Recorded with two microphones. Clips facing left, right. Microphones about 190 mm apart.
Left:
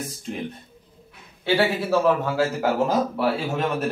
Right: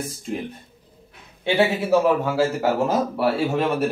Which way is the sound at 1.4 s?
20° right (ahead or behind).